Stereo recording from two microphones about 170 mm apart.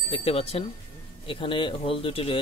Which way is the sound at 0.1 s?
35° left (ahead or behind).